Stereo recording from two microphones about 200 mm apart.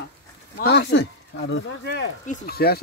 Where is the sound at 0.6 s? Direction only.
55° left (ahead or behind).